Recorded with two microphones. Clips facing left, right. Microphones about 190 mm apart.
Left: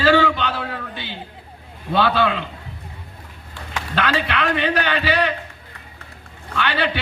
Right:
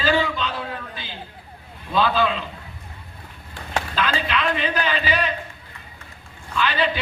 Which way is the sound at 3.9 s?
70° left (ahead or behind).